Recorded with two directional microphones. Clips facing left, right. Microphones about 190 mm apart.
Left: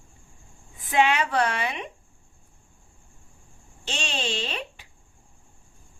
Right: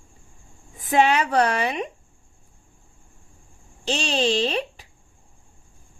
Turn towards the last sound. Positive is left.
turn(degrees=-35)  # may be behind; listen again after turning